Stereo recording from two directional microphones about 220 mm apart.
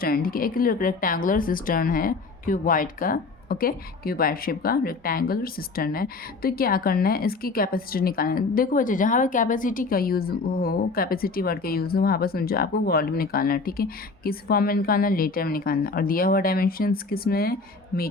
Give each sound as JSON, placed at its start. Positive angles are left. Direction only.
{"t": 0.0, "sound": "speech", "side_deg": 40}